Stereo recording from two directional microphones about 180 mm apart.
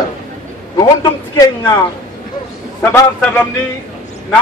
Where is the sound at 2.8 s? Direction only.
15° left (ahead or behind).